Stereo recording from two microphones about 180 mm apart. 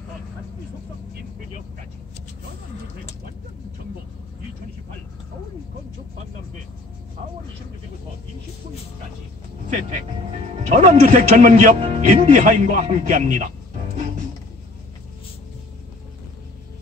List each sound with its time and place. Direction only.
10.7 s speech: 40° right (ahead or behind)